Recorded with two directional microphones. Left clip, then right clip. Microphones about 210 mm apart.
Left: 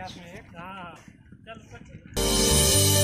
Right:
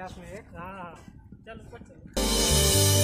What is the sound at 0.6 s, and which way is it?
Speech, 45° right (ahead or behind).